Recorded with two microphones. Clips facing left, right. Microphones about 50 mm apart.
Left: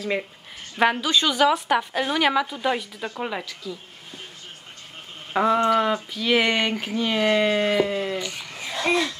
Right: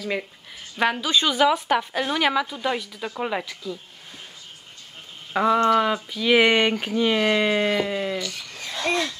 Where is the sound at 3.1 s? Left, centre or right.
Centre.